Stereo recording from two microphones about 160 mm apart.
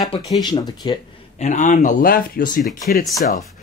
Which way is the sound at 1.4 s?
45° left (ahead or behind).